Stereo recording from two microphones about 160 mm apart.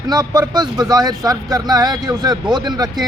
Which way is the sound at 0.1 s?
25° right (ahead or behind).